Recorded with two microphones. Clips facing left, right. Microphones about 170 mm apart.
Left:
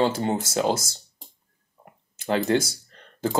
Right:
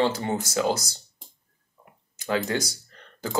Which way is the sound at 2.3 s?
25° left (ahead or behind).